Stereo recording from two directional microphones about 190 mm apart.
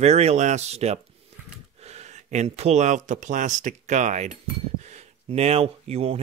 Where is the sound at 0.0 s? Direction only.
35° right (ahead or behind).